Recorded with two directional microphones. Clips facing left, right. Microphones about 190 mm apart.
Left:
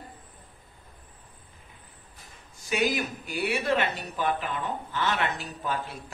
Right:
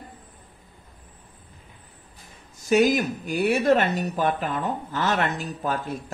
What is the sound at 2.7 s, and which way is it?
Speech, 45° right (ahead or behind).